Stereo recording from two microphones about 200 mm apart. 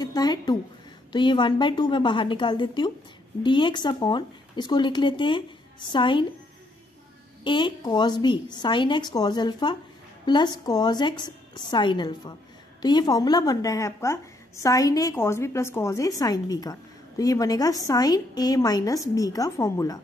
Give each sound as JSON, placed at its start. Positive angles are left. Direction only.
{"t": 0.0, "sound": "speech", "side_deg": 20}
{"t": 7.4, "sound": "a woman's voice", "side_deg": 25}